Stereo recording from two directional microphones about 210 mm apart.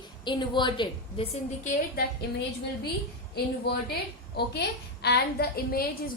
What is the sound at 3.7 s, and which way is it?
A woman's voice, 50° left (ahead or behind).